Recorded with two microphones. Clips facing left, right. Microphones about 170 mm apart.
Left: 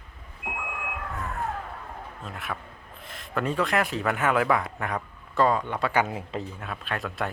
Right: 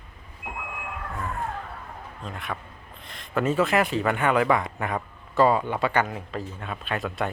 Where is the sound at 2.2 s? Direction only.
5° left (ahead or behind).